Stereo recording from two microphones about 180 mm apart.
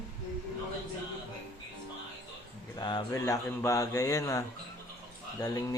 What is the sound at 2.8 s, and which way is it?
Speech, 25° left (ahead or behind).